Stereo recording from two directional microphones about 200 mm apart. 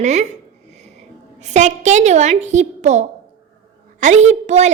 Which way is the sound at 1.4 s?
35° right (ahead or behind).